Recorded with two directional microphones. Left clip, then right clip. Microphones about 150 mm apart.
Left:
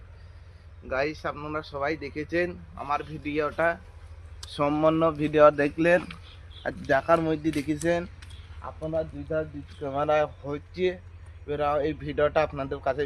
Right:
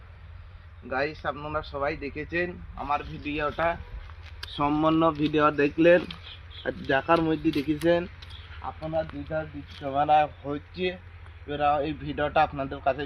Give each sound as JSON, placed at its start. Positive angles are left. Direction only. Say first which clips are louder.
{"t": 0.9, "sound": "speech", "louder": "even", "side_deg": 45}
{"t": 1.5, "sound": "a man's voice", "louder": "left 1 dB", "side_deg": 45}
{"t": 9.8, "sound": "a man's voice", "louder": "right 3 dB", "side_deg": 45}